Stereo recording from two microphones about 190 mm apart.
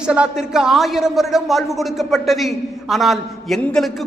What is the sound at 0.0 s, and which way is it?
A man's voice, 5° right (ahead or behind).